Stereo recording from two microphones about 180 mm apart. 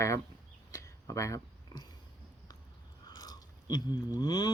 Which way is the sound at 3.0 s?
20° left (ahead or behind).